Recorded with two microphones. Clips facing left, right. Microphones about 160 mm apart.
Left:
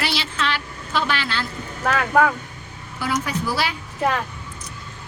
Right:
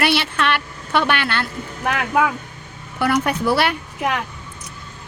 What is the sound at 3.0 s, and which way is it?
Speech, 65° right (ahead or behind).